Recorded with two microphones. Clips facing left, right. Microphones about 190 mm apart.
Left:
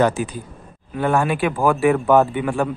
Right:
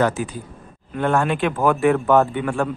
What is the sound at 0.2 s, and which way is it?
Speech, 15° left (ahead or behind).